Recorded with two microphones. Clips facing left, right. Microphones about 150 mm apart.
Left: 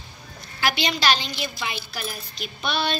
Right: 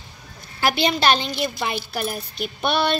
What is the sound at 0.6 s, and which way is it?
A woman's voice, 50° right (ahead or behind).